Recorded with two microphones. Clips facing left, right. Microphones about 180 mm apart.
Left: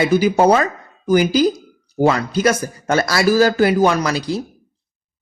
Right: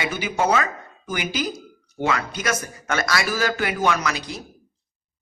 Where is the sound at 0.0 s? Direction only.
35° left (ahead or behind).